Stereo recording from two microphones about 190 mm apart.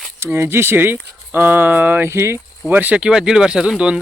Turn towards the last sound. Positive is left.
turn(degrees=-5)  # may be behind; listen again after turning